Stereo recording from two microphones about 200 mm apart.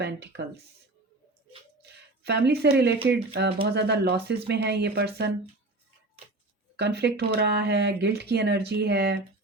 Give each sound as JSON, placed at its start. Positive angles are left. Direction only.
{"t": 0.0, "sound": "speech", "side_deg": -55}
{"t": 1.8, "sound": "a sound", "side_deg": -55}
{"t": 3.1, "sound": "speech", "side_deg": -55}
{"t": 6.7, "sound": "speech", "side_deg": -55}